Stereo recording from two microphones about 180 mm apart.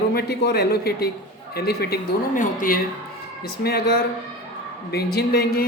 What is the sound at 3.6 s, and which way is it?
Speech, 60° left (ahead or behind).